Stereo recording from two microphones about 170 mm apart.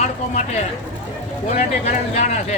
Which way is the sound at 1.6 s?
40° left (ahead or behind).